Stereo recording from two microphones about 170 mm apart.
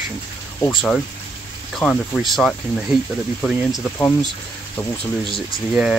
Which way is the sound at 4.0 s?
10° left (ahead or behind).